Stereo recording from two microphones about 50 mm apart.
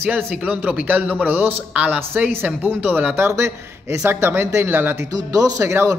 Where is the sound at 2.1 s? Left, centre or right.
Right.